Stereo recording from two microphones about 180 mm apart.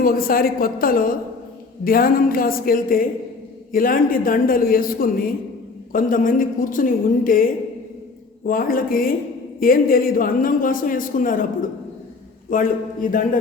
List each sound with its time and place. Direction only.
0.0 s a man's voice: 55° left (ahead or behind)
12.5 s a man's voice: 50° left (ahead or behind)